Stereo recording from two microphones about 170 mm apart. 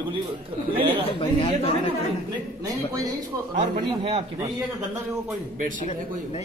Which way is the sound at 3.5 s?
35° right (ahead or behind).